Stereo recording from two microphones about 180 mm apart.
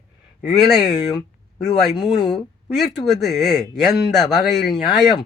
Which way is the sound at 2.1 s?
30° left (ahead or behind).